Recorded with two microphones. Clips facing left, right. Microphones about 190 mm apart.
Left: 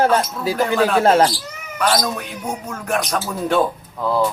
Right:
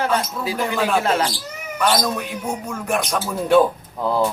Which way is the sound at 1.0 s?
45° left (ahead or behind).